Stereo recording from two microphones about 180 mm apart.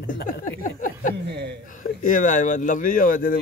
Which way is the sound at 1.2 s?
70° right (ahead or behind).